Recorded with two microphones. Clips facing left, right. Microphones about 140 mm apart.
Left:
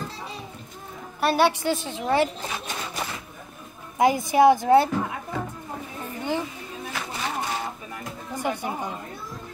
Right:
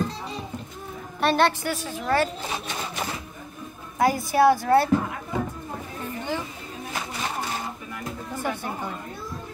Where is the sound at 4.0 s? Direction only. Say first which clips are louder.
Left 2 dB; 20° left (ahead or behind).